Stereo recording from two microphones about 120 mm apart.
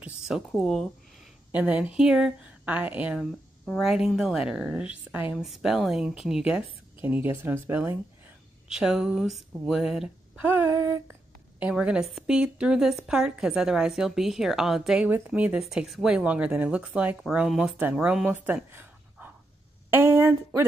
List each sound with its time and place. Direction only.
0.5 s a woman's voice: 5° left (ahead or behind)
1.5 s speech: 10° right (ahead or behind)
3.2 s a woman's voice: centre (ahead or behind)
7.0 s speech: 15° right (ahead or behind)
8.6 s a woman's voice: 5° right (ahead or behind)
10.7 s speech: 25° right (ahead or behind)
11.7 s a woman's voice: 5° right (ahead or behind)
15.0 s speech: 15° right (ahead or behind)